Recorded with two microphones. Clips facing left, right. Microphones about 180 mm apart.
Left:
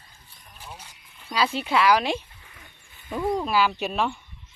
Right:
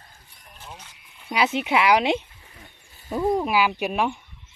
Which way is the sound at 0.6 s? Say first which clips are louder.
Even; 10° left (ahead or behind).